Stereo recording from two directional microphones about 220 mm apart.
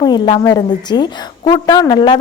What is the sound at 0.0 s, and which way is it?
A woman's voice, 20° left (ahead or behind).